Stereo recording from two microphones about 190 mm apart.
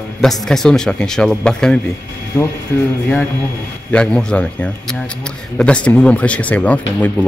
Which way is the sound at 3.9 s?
5° left (ahead or behind).